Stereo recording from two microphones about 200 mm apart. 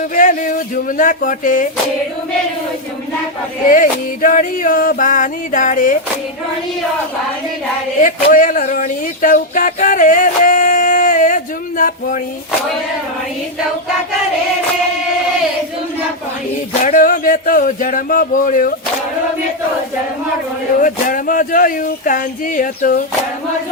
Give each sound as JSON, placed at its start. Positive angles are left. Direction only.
{"t": 0.1, "sound": "a sound", "side_deg": 40}
{"t": 0.9, "sound": "music", "side_deg": 40}
{"t": 3.7, "sound": "music", "side_deg": 45}
{"t": 8.0, "sound": "speech", "side_deg": 40}
{"t": 11.8, "sound": "music", "side_deg": 40}
{"t": 16.8, "sound": "speech", "side_deg": 40}
{"t": 20.8, "sound": "speech", "side_deg": 40}